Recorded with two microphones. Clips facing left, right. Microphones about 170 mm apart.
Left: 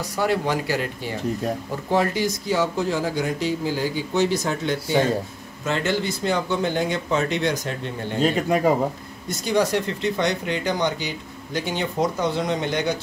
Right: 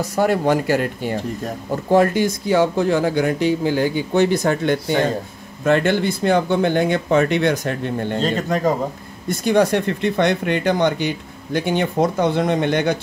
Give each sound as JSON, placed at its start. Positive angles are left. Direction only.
{"t": 0.0, "sound": "speech", "side_deg": -50}
{"t": 8.2, "sound": "speech", "side_deg": 10}
{"t": 9.3, "sound": "speech", "side_deg": -55}